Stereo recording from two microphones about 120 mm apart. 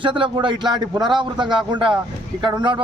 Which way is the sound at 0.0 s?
45° right (ahead or behind).